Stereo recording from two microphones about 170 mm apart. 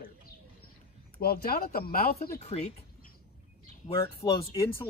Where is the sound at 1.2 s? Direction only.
65° left (ahead or behind).